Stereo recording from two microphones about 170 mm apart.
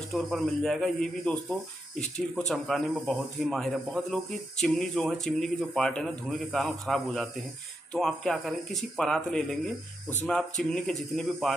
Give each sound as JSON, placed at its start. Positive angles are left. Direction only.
{"t": 0.1, "sound": "speech", "side_deg": 0}